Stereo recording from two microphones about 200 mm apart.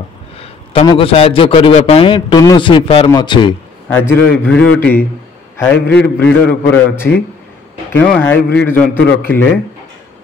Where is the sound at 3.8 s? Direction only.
10° left (ahead or behind).